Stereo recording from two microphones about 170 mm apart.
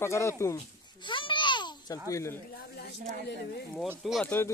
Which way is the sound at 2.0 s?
20° left (ahead or behind).